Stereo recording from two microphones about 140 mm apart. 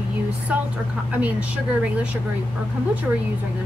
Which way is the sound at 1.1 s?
10° right (ahead or behind).